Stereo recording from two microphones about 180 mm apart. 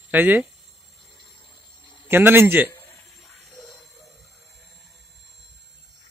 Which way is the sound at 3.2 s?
5° left (ahead or behind).